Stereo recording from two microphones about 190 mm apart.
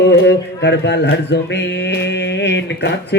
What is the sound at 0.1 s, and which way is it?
Speech, 65° left (ahead or behind).